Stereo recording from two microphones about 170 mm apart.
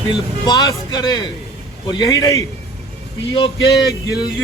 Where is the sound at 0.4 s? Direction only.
20° left (ahead or behind).